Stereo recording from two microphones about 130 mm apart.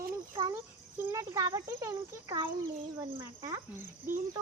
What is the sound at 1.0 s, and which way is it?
Speech, 25° right (ahead or behind).